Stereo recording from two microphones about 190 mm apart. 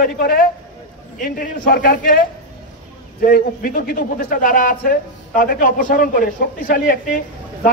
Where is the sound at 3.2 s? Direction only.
50° left (ahead or behind).